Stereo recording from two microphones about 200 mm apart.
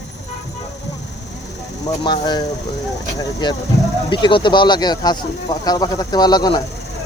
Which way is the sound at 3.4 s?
20° left (ahead or behind).